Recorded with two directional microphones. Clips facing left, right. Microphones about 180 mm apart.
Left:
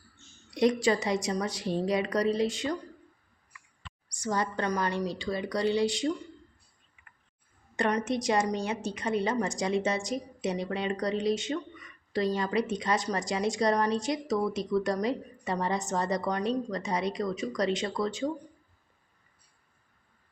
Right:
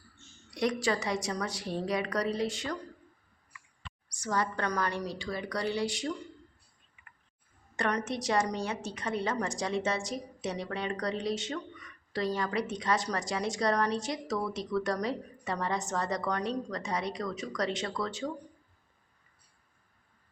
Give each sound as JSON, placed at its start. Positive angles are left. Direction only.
{"t": 0.5, "sound": "speech", "side_deg": 20}
{"t": 4.2, "sound": "speech", "side_deg": 20}
{"t": 7.9, "sound": "a woman's voice", "side_deg": 15}